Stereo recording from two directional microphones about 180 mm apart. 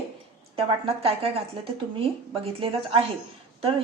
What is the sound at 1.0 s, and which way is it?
A woman's voice, 30° right (ahead or behind).